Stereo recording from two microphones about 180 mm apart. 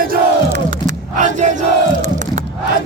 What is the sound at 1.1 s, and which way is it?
Crowd, 45° right (ahead or behind).